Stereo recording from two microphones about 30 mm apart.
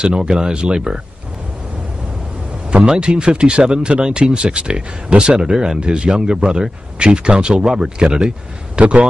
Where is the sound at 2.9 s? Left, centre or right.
Right.